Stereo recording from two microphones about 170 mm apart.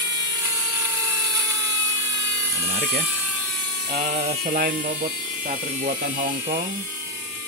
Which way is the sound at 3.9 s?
40° right (ahead or behind).